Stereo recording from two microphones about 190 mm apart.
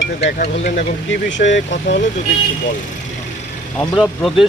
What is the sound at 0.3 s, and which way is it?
Speech, 40° left (ahead or behind).